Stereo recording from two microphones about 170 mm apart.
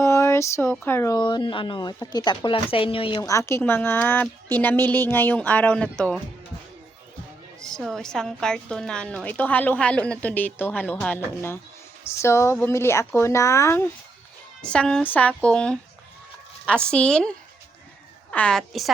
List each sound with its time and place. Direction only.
0.0 s speech: 15° left (ahead or behind)
7.6 s speech: centre (ahead or behind)